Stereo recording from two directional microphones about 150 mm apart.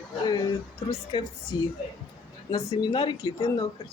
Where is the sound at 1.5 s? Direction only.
30° left (ahead or behind).